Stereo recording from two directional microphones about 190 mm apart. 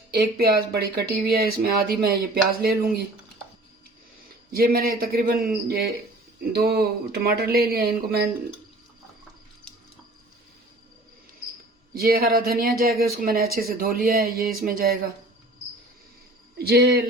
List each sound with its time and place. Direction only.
0.1 s speech: 55° right (ahead or behind)
4.5 s speech: 50° right (ahead or behind)
11.9 s speech: 50° right (ahead or behind)
16.6 s speech: 55° right (ahead or behind)